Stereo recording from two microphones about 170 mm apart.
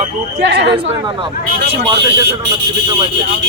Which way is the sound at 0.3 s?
85° right.